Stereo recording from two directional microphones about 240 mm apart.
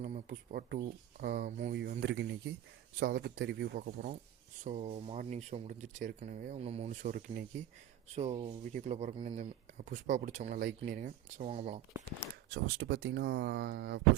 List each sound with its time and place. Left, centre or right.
0.0 s speech: right
4.6 s speech: right
12.3 s speech: right